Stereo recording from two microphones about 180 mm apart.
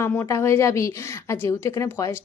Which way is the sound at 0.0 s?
15° left (ahead or behind).